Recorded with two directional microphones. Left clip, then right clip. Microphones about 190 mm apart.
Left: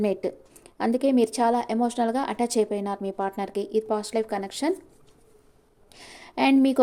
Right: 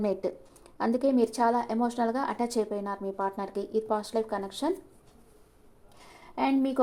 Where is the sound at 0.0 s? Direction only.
20° left (ahead or behind).